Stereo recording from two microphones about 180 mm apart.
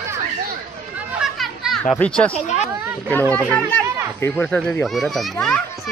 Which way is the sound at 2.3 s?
40° left (ahead or behind).